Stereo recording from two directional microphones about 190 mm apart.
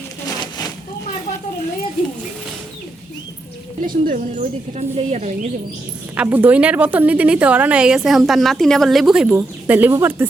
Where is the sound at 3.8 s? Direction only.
45° right (ahead or behind).